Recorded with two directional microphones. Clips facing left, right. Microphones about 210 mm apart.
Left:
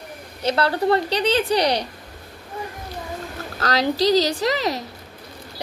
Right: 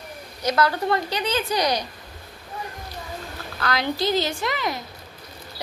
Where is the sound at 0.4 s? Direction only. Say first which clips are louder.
Left 1 dB; 30° left (ahead or behind).